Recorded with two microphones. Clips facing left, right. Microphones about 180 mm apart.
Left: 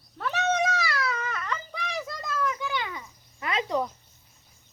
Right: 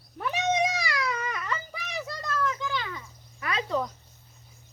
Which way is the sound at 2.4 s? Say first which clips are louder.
Left 1 dB; 15° left (ahead or behind).